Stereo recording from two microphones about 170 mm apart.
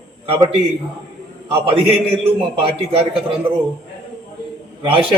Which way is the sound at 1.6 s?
30° right (ahead or behind).